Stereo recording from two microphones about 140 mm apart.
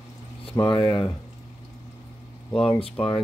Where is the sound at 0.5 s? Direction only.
25° left (ahead or behind).